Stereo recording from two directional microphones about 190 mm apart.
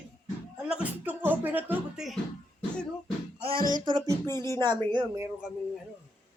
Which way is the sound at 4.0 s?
15° left (ahead or behind).